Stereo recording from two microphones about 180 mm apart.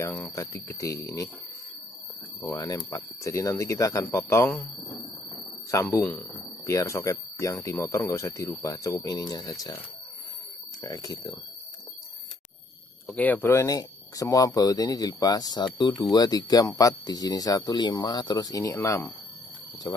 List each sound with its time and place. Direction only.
0.0 s speech: 10° left (ahead or behind)
2.4 s speech: 20° left (ahead or behind)
5.7 s speech: 15° left (ahead or behind)
10.8 s speech: 20° left (ahead or behind)
13.0 s speech: 10° left (ahead or behind)